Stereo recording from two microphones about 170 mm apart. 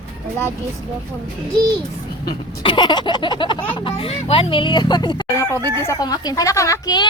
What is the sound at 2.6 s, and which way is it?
Speech, 25° left (ahead or behind).